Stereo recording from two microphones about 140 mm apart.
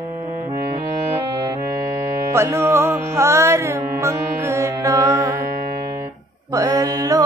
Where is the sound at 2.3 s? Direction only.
20° right (ahead or behind).